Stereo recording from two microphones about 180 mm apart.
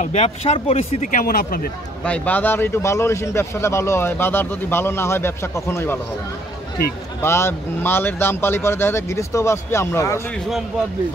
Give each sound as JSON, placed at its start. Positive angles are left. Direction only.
{"t": 0.0, "sound": "speech", "side_deg": 40}
{"t": 2.0, "sound": "speech", "side_deg": 10}
{"t": 7.2, "sound": "speech", "side_deg": 15}